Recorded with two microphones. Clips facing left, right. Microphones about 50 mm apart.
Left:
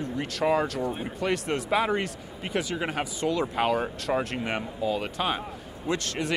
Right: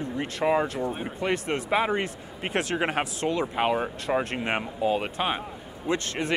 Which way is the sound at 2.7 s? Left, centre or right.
Right.